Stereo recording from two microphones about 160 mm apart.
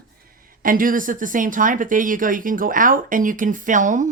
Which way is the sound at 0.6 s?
60° right (ahead or behind).